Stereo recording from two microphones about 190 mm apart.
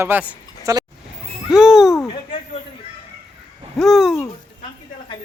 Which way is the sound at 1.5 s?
5° right (ahead or behind).